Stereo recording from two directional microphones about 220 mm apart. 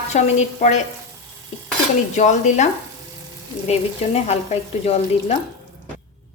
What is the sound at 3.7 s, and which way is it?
Stir, 30° left (ahead or behind).